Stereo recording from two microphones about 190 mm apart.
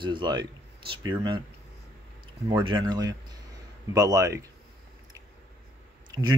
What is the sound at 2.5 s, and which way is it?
Speech, 25° right (ahead or behind).